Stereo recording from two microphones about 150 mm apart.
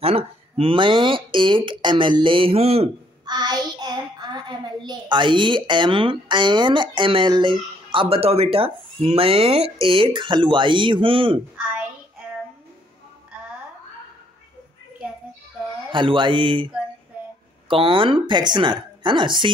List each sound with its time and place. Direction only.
0.0 s a child's voice: 40° right (ahead or behind)
3.3 s a child's voice: 25° right (ahead or behind)
15.9 s a child's voice: 35° right (ahead or behind)